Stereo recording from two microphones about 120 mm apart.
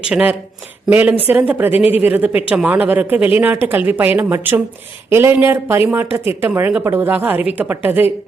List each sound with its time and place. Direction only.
0.0 s speech: 10° right (ahead or behind)